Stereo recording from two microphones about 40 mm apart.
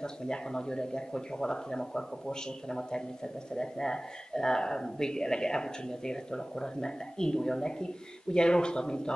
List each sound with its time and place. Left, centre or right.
0.0 s speech: centre